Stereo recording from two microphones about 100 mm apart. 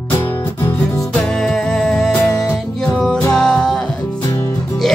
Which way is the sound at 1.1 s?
5° left (ahead or behind).